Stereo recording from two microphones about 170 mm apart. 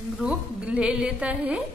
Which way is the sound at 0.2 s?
5° right (ahead or behind).